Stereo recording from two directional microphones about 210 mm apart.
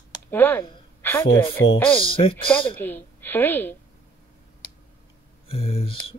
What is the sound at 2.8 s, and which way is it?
A woman's voice, 10° left (ahead or behind).